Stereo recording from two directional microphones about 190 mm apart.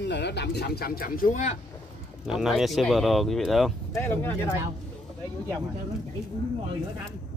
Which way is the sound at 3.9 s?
10° left (ahead or behind).